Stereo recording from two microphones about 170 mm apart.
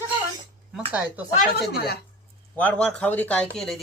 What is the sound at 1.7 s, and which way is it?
Speech, 65° left (ahead or behind).